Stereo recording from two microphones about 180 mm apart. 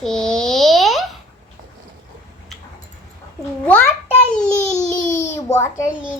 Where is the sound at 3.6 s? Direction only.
10° left (ahead or behind).